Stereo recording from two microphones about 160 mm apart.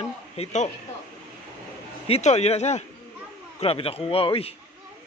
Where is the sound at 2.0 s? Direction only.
40° left (ahead or behind).